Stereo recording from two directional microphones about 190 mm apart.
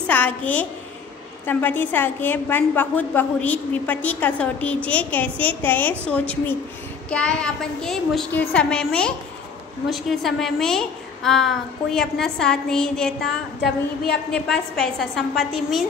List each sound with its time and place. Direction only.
0.0 s a woman's voice: 10° left (ahead or behind)